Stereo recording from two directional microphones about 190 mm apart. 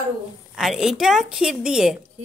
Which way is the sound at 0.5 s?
Centre (ahead or behind).